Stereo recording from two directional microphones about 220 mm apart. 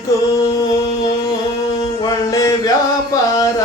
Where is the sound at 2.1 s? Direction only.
15° left (ahead or behind).